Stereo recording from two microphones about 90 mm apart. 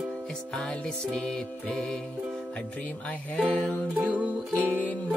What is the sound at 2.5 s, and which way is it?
Music, 15° left (ahead or behind).